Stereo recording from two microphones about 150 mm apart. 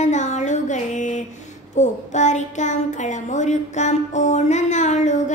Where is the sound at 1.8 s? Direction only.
50° left (ahead or behind).